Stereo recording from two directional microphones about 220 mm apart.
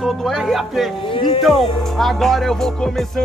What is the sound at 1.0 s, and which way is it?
Speech, 25° left (ahead or behind).